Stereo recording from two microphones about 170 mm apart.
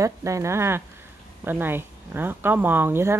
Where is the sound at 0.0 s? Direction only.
20° right (ahead or behind).